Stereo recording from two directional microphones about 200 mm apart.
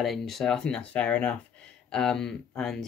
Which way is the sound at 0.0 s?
Centre (ahead or behind).